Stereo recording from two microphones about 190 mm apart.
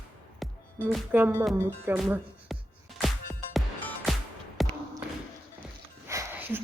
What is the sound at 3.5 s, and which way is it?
Music, centre (ahead or behind).